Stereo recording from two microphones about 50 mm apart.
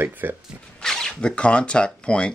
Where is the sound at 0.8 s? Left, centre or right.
Centre.